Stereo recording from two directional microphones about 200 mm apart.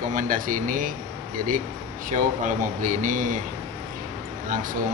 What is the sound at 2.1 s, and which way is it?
A man's voice, 40° right (ahead or behind).